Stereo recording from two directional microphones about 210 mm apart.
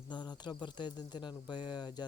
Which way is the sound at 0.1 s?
20° left (ahead or behind).